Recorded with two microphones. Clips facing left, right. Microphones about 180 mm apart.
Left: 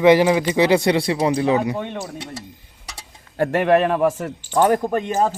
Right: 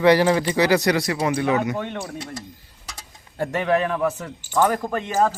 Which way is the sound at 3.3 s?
65° left (ahead or behind).